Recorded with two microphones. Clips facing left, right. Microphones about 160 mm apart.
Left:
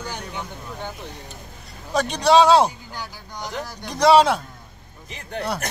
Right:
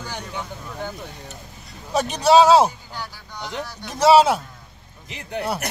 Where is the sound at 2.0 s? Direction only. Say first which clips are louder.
Right 1 dB; 5° right (ahead or behind).